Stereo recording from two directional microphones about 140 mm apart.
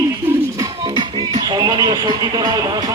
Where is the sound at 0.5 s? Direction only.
25° right (ahead or behind).